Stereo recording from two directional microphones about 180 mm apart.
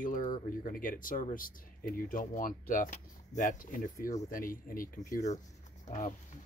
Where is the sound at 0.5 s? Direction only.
50° left (ahead or behind).